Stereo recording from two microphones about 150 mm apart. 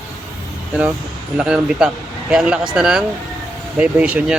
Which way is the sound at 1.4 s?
5° right (ahead or behind).